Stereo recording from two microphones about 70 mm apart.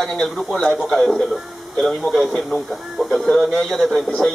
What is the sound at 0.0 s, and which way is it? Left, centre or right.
A man's voice, centre.